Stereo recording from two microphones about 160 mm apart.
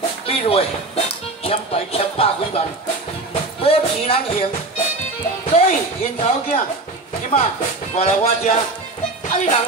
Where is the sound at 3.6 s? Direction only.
35° left (ahead or behind).